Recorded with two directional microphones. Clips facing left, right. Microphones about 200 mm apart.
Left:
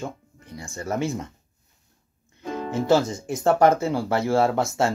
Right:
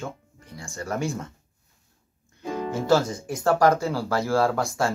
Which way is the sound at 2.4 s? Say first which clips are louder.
Right 1 dB; 15° right (ahead or behind).